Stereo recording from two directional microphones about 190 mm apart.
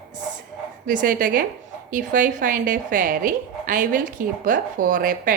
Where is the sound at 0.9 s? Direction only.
45° right (ahead or behind).